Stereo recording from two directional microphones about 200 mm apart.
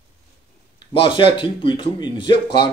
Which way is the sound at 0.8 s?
25° left (ahead or behind).